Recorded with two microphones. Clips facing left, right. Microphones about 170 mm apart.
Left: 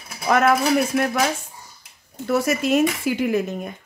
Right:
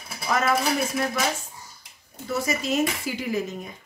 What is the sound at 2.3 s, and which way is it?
Speech, 65° left (ahead or behind).